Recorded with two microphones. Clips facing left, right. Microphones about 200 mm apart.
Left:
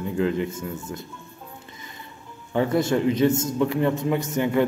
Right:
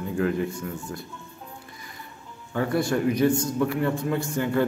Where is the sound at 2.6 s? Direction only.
25° left (ahead or behind).